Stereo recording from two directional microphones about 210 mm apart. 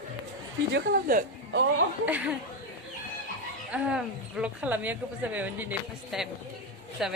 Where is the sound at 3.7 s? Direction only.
5° right (ahead or behind).